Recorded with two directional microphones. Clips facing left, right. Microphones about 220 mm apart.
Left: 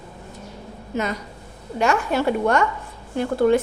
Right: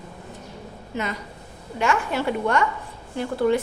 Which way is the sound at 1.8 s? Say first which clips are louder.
Left 3 dB; 40° left (ahead or behind).